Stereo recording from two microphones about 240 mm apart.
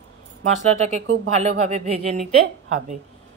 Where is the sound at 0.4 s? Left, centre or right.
Right.